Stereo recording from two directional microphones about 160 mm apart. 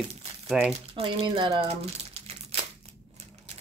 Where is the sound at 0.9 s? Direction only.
30° right (ahead or behind).